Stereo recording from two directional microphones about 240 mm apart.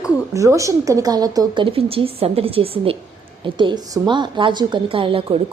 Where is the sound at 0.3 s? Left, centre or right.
Centre.